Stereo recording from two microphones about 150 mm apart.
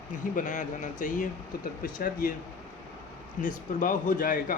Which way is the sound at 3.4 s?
60° left (ahead or behind).